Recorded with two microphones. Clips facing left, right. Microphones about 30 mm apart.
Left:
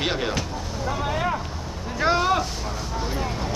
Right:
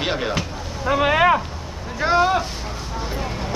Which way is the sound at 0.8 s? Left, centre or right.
Right.